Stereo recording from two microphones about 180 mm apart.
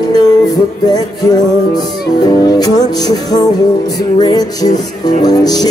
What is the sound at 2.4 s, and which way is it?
Music, 20° left (ahead or behind).